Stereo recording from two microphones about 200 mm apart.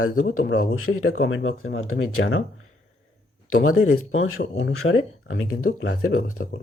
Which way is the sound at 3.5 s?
90° left.